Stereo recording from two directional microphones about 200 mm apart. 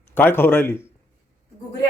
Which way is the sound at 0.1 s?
10° left (ahead or behind).